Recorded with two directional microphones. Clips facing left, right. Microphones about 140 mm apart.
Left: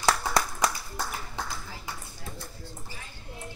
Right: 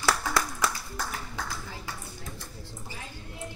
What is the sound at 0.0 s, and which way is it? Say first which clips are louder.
Clapping: left 2 dB; 20° left (ahead or behind).